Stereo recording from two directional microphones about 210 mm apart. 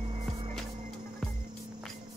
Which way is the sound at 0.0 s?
25° right (ahead or behind).